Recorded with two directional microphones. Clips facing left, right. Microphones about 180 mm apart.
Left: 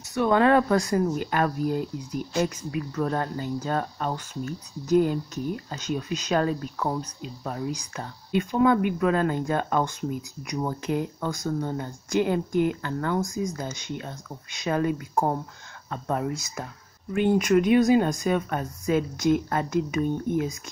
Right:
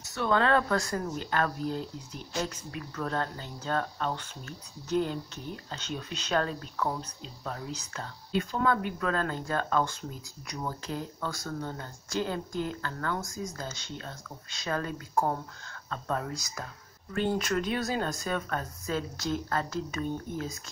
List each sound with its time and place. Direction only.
0.1 s speech: 15° left (ahead or behind)